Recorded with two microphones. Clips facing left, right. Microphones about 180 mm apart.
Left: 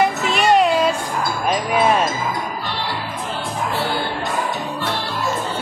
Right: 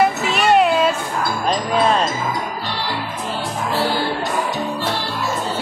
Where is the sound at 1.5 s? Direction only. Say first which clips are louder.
Even; 10° left (ahead or behind).